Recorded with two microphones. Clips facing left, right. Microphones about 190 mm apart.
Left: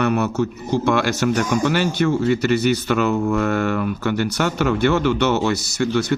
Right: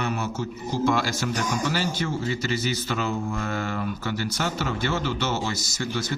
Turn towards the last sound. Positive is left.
turn(degrees=65)  # may be behind; listen again after turning